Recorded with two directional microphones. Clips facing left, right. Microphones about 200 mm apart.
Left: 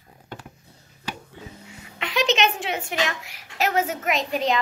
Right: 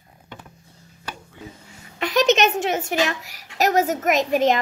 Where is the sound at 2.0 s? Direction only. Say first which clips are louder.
Right 5 dB; 45° right (ahead or behind).